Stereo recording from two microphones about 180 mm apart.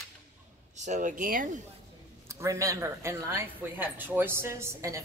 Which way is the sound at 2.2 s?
15° right (ahead or behind).